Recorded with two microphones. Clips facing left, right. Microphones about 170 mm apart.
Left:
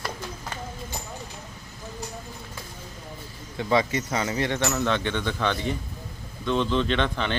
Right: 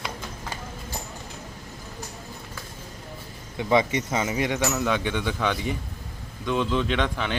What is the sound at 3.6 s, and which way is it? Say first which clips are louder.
Speech: right 1 dB; 20° right (ahead or behind).